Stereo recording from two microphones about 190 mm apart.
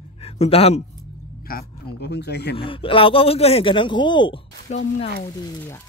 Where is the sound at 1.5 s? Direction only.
50° left (ahead or behind).